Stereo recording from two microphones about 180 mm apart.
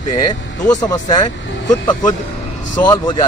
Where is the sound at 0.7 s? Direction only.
20° left (ahead or behind).